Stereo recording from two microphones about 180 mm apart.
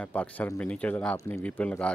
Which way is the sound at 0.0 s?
5° left (ahead or behind).